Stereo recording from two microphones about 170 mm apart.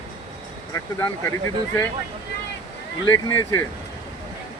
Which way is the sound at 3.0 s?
20° left (ahead or behind).